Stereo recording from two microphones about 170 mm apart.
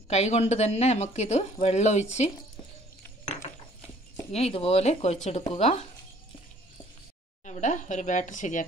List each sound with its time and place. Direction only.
0.1 s speech: 40° left (ahead or behind)
4.3 s speech: 35° left (ahead or behind)
7.4 s speech: 45° left (ahead or behind)